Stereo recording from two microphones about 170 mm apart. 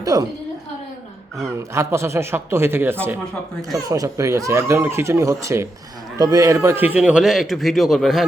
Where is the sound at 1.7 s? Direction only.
15° right (ahead or behind).